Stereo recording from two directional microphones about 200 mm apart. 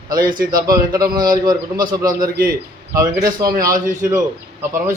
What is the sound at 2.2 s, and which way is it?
Speech, 45° right (ahead or behind).